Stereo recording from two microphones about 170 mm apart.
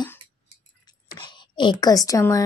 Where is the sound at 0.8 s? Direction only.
25° left (ahead or behind).